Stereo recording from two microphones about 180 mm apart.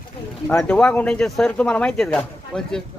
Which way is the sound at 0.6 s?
5° left (ahead or behind).